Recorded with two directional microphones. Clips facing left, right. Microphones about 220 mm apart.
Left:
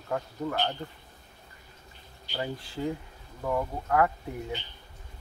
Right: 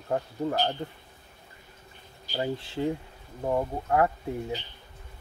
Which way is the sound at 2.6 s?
25° right (ahead or behind).